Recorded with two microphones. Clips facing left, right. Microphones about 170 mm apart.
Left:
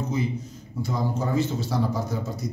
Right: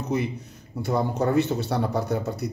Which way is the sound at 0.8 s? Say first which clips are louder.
Right 4 dB; 65° right (ahead or behind).